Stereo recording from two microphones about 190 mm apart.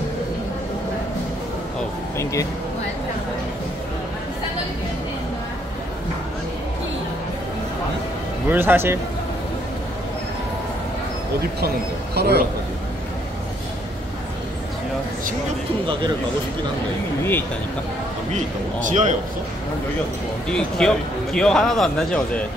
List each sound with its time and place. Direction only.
8.5 s speech: 10° right (ahead or behind)
12.2 s a man's voice: 60° right (ahead or behind)
18.9 s a man's voice: 40° right (ahead or behind)
20.4 s speech: 5° left (ahead or behind)